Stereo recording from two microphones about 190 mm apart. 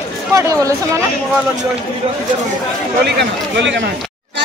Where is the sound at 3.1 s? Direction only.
65° right (ahead or behind).